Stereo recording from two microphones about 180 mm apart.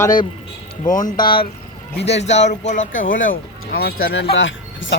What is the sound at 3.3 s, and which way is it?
Speech, 60° left (ahead or behind).